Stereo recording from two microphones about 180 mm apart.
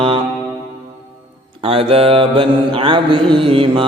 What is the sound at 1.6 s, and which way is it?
Mantra, 35° right (ahead or behind).